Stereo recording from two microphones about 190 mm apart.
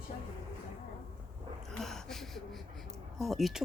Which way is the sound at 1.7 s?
Centre (ahead or behind).